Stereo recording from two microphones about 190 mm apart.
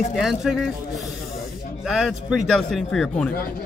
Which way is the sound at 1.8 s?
Centre (ahead or behind).